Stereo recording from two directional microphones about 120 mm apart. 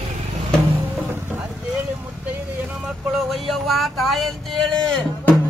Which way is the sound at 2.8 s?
Centre (ahead or behind).